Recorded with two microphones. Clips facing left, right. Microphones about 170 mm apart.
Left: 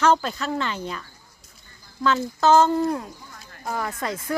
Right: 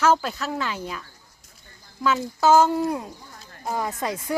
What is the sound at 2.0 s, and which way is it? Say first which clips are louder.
Speech: even; 10° right (ahead or behind).